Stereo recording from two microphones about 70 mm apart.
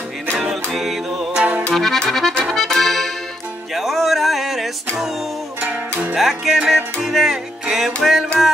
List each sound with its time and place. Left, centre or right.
0.3 s music: centre
1.3 s music: centre
1.7 s accordion: centre
3.7 s music: centre
5.6 s music: right
6.1 s music: centre